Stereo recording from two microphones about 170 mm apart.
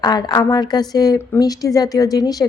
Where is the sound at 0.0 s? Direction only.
20° left (ahead or behind).